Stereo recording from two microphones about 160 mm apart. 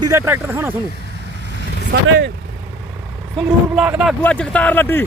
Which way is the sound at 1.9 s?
70° right (ahead or behind).